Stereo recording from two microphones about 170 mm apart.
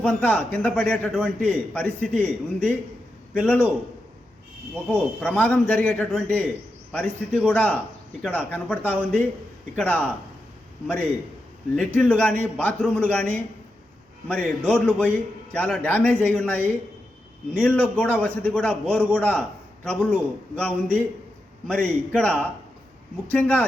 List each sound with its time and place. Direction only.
0.0 s a man's voice: 10° left (ahead or behind)
4.7 s a man's voice: 10° left (ahead or behind)
11.8 s a man's voice: 5° left (ahead or behind)